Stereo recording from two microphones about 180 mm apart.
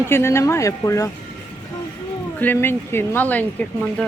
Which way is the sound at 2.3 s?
10° left (ahead or behind).